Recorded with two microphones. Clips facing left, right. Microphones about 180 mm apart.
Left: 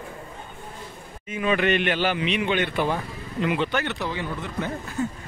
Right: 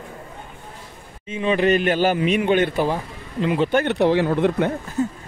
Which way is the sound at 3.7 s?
50° right (ahead or behind).